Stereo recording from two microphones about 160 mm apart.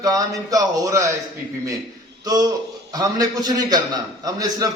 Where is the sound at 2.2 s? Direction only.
25° right (ahead or behind).